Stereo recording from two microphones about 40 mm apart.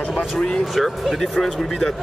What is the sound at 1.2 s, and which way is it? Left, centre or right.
Speech, centre.